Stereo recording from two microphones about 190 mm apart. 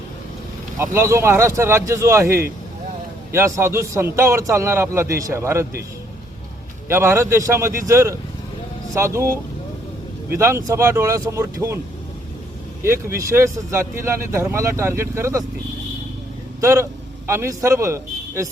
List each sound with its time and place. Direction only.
0.8 s speech: 15° right (ahead or behind)
6.8 s speech: 15° right (ahead or behind)
12.8 s speech: 15° right (ahead or behind)
16.6 s a man's voice: 15° right (ahead or behind)